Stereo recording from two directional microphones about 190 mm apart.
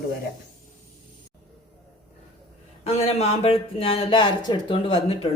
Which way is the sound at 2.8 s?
35° left (ahead or behind).